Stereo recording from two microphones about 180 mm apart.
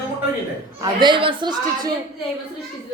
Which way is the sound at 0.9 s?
25° right (ahead or behind).